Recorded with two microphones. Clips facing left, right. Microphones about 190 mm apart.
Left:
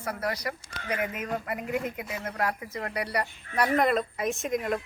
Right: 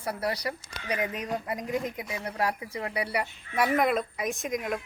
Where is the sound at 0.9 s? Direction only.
15° right (ahead or behind).